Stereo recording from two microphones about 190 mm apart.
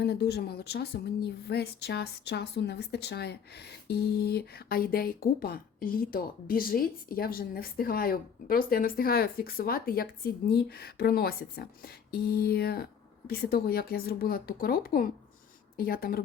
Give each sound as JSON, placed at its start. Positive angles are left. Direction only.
{"t": 0.0, "sound": "a woman's voice", "side_deg": 60}